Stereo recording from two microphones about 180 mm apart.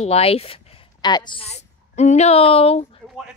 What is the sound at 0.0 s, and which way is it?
A woman's voice, 35° left (ahead or behind).